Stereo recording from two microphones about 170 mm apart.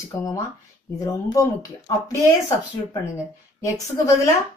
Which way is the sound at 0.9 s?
20° left (ahead or behind).